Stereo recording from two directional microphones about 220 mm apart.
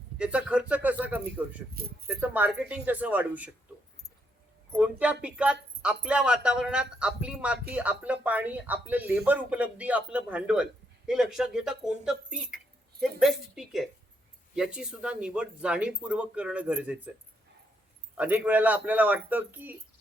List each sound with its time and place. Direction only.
0.2 s speech: 5° right (ahead or behind)
1.7 s speech: 45° right (ahead or behind)
2.0 s speech: 10° right (ahead or behind)
4.8 s a man's voice: 5° right (ahead or behind)
18.2 s speech: 5° right (ahead or behind)